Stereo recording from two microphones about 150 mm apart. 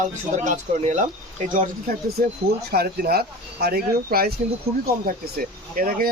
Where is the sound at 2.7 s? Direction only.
90° right.